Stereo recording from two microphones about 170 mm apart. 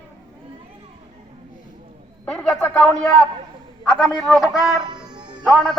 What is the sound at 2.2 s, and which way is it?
A man's voice, 5° left (ahead or behind).